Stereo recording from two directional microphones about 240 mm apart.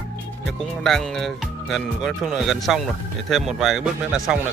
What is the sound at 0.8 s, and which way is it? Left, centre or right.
Speech, centre.